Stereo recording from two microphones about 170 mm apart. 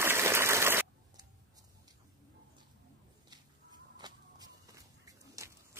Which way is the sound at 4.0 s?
20° right (ahead or behind).